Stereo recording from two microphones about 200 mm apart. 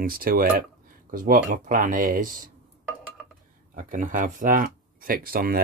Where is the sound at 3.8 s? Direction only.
40° right (ahead or behind).